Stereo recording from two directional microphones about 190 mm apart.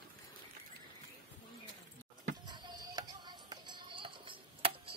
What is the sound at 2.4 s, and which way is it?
Music, 20° right (ahead or behind).